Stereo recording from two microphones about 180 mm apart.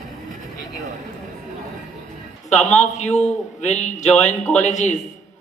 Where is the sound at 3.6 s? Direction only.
40° left (ahead or behind).